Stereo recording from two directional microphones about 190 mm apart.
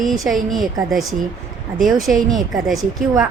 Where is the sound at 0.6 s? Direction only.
20° right (ahead or behind).